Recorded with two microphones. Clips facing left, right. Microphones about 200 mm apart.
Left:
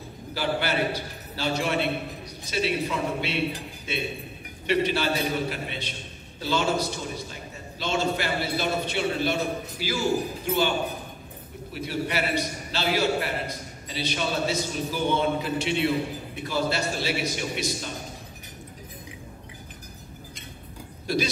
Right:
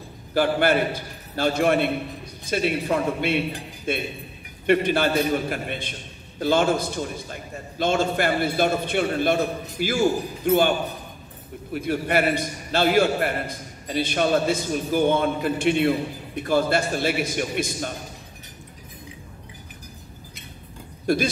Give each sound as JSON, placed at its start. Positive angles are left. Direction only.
{"t": 0.3, "sound": "a man's voice", "side_deg": -50}
{"t": 11.7, "sound": "a man's voice", "side_deg": -50}
{"t": 21.1, "sound": "a man's voice", "side_deg": -50}